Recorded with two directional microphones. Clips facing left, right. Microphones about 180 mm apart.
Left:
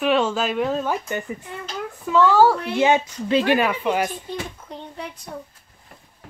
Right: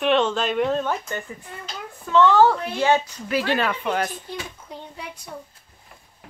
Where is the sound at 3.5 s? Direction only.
10° left (ahead or behind).